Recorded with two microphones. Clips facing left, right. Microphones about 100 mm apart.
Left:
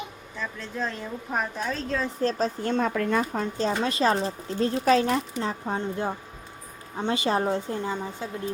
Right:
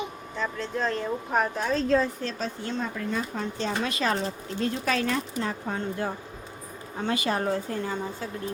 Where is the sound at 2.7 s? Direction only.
75° left (ahead or behind); by 8.3 s 20° left (ahead or behind).